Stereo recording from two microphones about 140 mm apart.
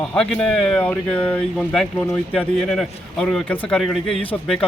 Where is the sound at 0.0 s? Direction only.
5° left (ahead or behind).